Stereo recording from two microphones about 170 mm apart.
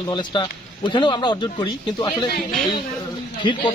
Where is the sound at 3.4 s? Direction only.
25° left (ahead or behind).